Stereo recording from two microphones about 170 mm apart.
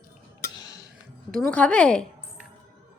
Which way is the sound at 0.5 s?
20° left (ahead or behind).